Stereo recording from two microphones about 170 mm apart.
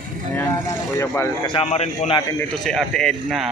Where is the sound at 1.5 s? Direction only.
35° left (ahead or behind).